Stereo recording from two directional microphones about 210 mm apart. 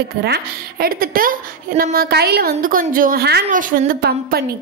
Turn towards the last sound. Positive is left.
turn(degrees=-45)  # may be behind; listen again after turning